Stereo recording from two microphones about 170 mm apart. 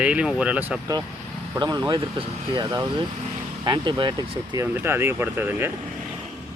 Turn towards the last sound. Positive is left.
turn(degrees=-15)  # may be behind; listen again after turning